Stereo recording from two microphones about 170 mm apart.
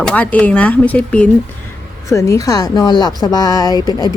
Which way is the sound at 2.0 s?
20° left (ahead or behind).